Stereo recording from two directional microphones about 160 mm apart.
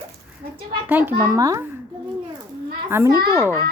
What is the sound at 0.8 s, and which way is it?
Speech, 10° right (ahead or behind).